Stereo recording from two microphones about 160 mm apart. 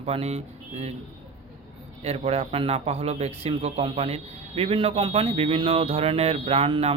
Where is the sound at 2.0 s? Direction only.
40° right (ahead or behind).